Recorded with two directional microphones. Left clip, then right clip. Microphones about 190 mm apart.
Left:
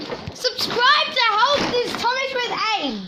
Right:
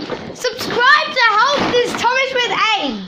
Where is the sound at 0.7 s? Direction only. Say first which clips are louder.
Right 5 dB; 25° left (ahead or behind).